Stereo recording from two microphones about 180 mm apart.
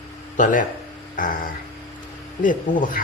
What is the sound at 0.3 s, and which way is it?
Speech, 45° left (ahead or behind).